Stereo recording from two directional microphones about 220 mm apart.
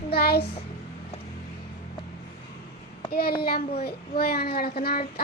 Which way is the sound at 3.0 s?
45° left (ahead or behind).